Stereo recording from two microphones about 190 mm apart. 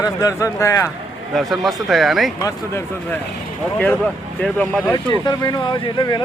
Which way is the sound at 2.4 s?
15° left (ahead or behind).